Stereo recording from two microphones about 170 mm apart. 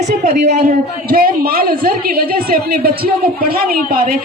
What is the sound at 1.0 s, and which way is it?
A woman's voice, 60° right (ahead or behind).